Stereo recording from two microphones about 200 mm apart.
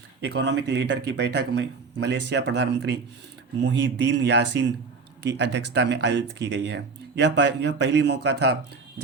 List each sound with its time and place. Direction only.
0.2 s speech: 60° right (ahead or behind)